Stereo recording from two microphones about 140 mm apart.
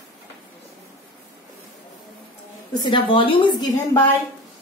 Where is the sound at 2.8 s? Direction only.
35° left (ahead or behind).